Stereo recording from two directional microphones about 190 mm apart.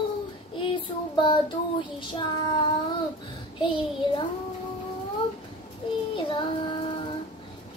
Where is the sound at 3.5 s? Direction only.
25° left (ahead or behind).